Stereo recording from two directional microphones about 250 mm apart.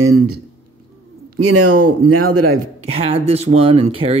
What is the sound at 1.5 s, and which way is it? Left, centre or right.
Speech, right.